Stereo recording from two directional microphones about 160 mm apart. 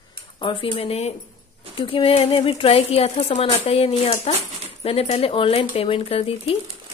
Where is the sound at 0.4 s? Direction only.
30° left (ahead or behind).